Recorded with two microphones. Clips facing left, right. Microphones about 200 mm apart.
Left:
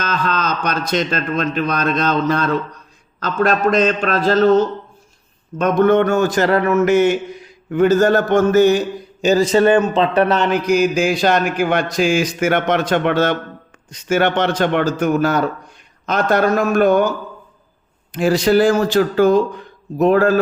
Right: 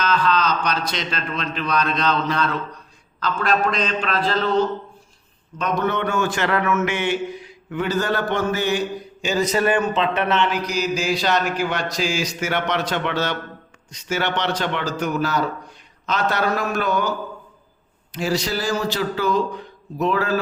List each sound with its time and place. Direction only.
0.0 s speech: 45° left (ahead or behind)
9.5 s speech: 25° left (ahead or behind); by 17.1 s 50° left (ahead or behind)
18.1 s speech: 55° left (ahead or behind)